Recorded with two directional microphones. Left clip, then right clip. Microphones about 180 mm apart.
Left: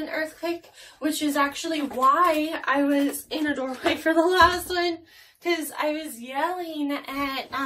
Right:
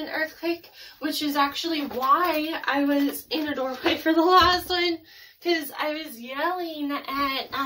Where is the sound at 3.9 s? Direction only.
Centre (ahead or behind).